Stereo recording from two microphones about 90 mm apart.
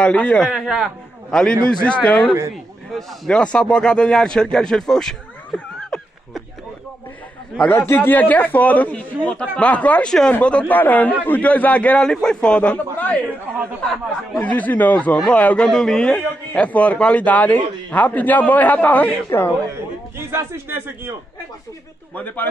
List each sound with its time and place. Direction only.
0.0 s a man's voice: 15° left (ahead or behind)
0.5 s a man's voice: 5° right (ahead or behind)
1.3 s a man's voice: 10° left (ahead or behind)
7.7 s a man's voice: 25° left (ahead or behind)
20.2 s a man's voice: 30° right (ahead or behind)
22.1 s a man's voice: 20° left (ahead or behind)